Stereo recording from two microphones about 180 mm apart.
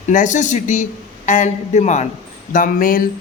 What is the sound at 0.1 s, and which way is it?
A man's voice, 45° left (ahead or behind).